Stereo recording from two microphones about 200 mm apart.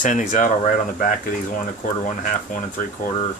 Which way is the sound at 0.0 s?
40° left (ahead or behind).